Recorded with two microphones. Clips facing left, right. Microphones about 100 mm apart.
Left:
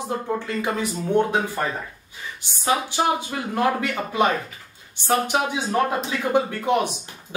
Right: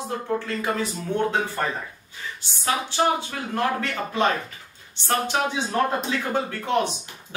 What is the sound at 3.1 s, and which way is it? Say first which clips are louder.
Speech: left 2 dB; 10° left (ahead or behind).